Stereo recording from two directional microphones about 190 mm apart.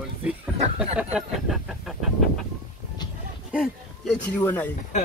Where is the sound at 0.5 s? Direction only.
35° right (ahead or behind).